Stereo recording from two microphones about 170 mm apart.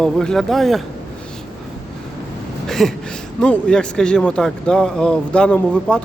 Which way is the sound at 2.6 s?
Centre (ahead or behind).